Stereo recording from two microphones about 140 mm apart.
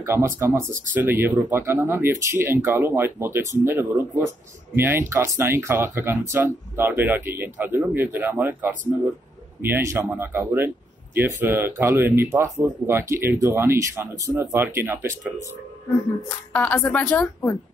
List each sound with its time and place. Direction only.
0.0 s speech: 15° right (ahead or behind)
16.5 s a woman's voice: 10° left (ahead or behind)